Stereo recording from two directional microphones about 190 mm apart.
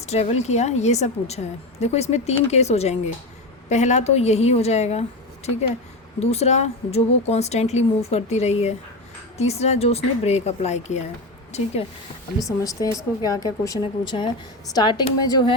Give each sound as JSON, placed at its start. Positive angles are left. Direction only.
{"t": 0.0, "sound": "a woman's voice", "side_deg": 35}
{"t": 6.1, "sound": "a woman's voice", "side_deg": 35}
{"t": 12.4, "sound": "a woman's voice", "side_deg": 20}